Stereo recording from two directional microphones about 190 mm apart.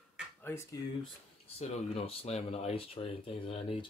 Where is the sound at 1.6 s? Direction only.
30° left (ahead or behind).